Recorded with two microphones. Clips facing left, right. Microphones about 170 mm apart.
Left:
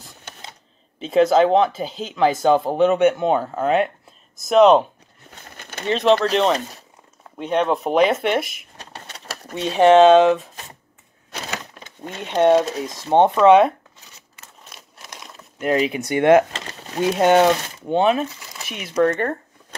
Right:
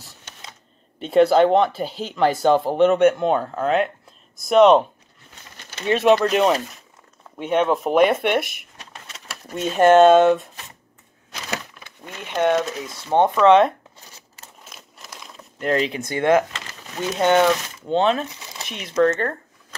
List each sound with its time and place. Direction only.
0.9 s speech: centre (ahead or behind)
5.4 s crumpling: 55° left (ahead or behind)
5.9 s speech: 10° right (ahead or behind)
8.7 s vehicle: 35° left (ahead or behind)
9.8 s speech: centre (ahead or behind)
11.8 s a sound: 25° left (ahead or behind)
12.3 s speech: 25° left (ahead or behind)
13.1 s speech: 15° left (ahead or behind)
14.6 s a sound: centre (ahead or behind)
16.1 s speech: 15° left (ahead or behind)
16.5 s a sound: 30° left (ahead or behind)
17.8 s speech: 15° left (ahead or behind)